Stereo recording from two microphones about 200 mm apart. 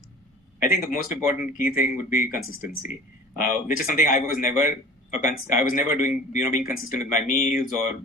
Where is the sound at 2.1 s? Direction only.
45° left (ahead or behind).